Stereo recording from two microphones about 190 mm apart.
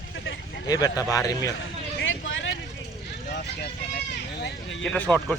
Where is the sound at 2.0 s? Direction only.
90° left.